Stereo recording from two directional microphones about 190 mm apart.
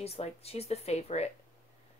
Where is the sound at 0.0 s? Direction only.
30° left (ahead or behind).